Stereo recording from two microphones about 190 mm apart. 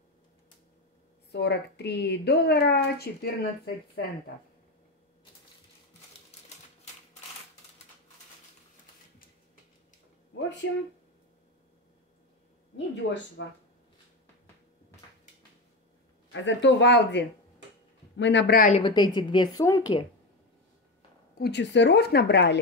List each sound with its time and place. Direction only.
1.3 s a woman's voice: 60° left (ahead or behind)
10.6 s speech: 70° left (ahead or behind)
12.7 s speech: 70° left (ahead or behind)
16.3 s a woman's voice: 75° left (ahead or behind); by 18.7 s 60° left (ahead or behind)
18.7 s a woman's voice: 25° left (ahead or behind)
21.4 s a woman's voice: 65° left (ahead or behind)